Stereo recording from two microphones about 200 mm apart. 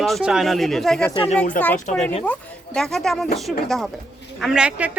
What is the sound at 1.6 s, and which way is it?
Speech, 45° left (ahead or behind).